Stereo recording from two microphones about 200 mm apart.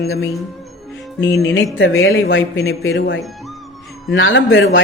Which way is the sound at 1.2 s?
60° left (ahead or behind).